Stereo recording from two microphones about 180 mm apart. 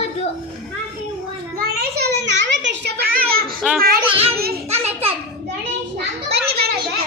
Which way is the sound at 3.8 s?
55° right (ahead or behind).